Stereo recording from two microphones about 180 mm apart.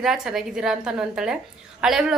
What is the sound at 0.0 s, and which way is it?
A woman's voice, 5° right (ahead or behind).